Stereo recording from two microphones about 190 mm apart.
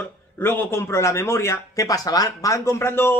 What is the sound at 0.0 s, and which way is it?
Speech, 10° left (ahead or behind).